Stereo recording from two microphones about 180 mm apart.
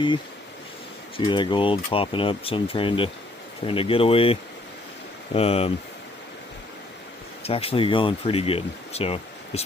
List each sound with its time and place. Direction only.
1.1 s speech: 25° left (ahead or behind)
7.4 s speech: 30° left (ahead or behind)